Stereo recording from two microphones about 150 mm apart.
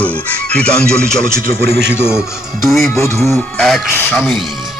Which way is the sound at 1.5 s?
90° right.